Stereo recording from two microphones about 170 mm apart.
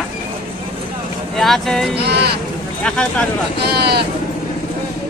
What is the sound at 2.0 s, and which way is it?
Speech, 75° right (ahead or behind).